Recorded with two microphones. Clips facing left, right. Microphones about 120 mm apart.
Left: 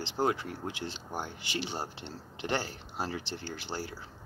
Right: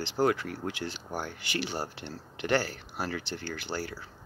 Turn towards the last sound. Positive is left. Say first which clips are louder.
# right 3 dB
turn(degrees=25)  # may be behind; listen again after turning